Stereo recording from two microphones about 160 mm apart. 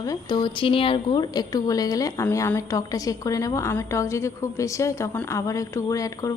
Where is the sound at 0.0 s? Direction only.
25° left (ahead or behind).